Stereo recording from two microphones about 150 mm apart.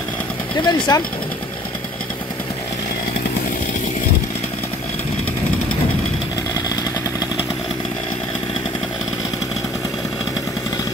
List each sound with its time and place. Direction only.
0.7 s speech: 25° left (ahead or behind)